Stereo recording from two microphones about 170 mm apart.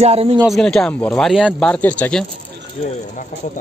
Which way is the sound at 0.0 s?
35° right (ahead or behind).